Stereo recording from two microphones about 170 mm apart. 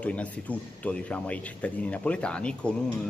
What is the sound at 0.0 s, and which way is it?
Speech, 10° left (ahead or behind).